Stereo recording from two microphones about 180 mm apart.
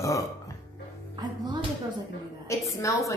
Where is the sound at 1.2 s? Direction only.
25° right (ahead or behind).